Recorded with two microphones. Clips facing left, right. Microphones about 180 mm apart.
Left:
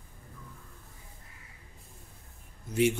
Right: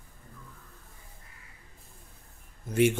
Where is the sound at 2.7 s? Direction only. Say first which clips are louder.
Right 2 dB; 50° right (ahead or behind).